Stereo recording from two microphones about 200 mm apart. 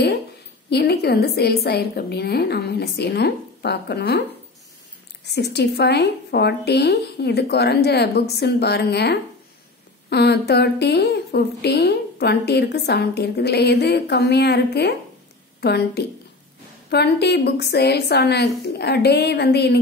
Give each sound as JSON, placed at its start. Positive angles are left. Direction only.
{"t": 0.7, "sound": "a woman's voice", "side_deg": 55}
{"t": 5.2, "sound": "a woman's voice", "side_deg": 55}